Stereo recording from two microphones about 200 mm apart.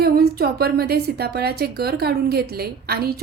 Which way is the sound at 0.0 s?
50° right (ahead or behind).